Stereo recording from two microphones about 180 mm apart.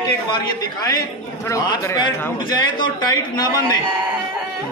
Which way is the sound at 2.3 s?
25° left (ahead or behind).